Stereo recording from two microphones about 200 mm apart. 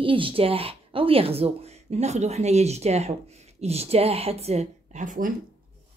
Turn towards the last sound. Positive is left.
turn(degrees=-40)  # may be behind; listen again after turning